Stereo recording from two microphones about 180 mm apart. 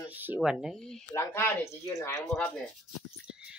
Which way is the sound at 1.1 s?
15° left (ahead or behind).